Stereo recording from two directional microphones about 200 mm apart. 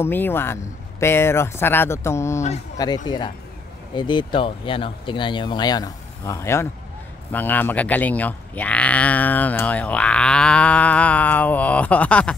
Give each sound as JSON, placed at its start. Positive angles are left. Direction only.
{"t": 0.0, "sound": "speech", "side_deg": 10}